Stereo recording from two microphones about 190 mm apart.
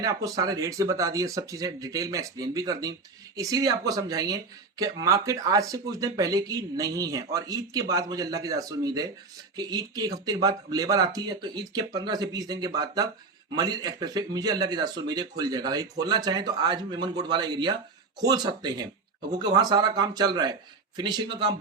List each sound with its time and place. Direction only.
0.0 s speech: 15° right (ahead or behind)